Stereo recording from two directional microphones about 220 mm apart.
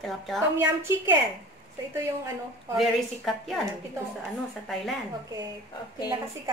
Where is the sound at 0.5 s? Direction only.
10° right (ahead or behind).